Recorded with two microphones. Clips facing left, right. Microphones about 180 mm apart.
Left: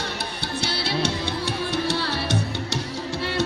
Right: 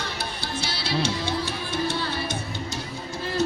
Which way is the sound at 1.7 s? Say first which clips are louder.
Even; 70° left (ahead or behind).